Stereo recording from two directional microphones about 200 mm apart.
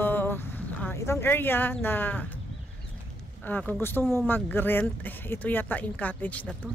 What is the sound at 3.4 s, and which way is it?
Speech, 10° left (ahead or behind).